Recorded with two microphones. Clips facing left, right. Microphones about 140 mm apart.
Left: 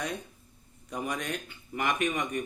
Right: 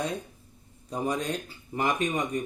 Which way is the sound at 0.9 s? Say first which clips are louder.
Right 4 dB; 30° right (ahead or behind).